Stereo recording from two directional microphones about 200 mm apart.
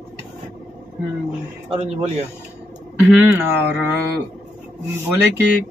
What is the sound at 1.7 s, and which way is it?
Speech, 30° right (ahead or behind).